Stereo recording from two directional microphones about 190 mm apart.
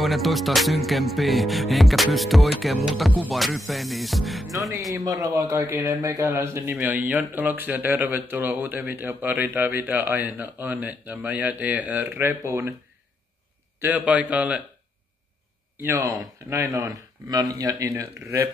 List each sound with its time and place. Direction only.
0.0 s music: centre (ahead or behind)
4.9 s speech: 15° right (ahead or behind)
13.7 s speech: 10° right (ahead or behind)
15.8 s speech: 15° right (ahead or behind)